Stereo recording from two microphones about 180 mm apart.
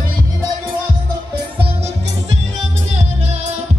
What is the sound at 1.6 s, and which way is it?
Music, 30° right (ahead or behind).